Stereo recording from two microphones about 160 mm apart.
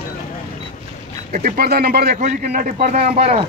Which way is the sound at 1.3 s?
55° right (ahead or behind).